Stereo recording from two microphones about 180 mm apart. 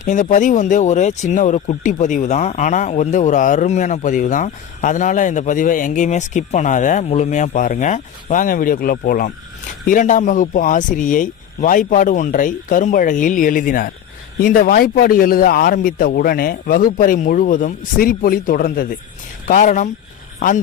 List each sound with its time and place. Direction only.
0.0 s speech: 45° left (ahead or behind)